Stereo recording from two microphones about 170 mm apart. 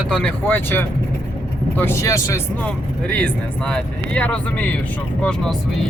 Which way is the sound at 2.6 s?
5° left (ahead or behind).